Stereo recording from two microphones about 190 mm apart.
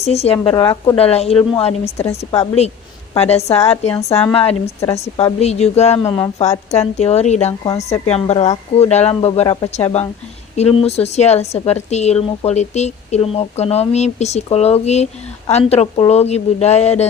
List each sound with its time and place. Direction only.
0.0 s speech: 35° left (ahead or behind)
0.5 s speech: 20° left (ahead or behind)
0.9 s speech: 30° left (ahead or behind)
6.1 s speech: 20° left (ahead or behind)
6.4 s speech: 35° left (ahead or behind)